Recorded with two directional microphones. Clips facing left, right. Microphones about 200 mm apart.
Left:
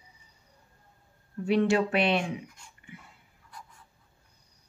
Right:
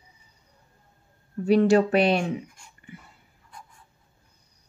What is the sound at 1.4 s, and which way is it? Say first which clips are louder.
Speech: right 6 dB; 40° right (ahead or behind).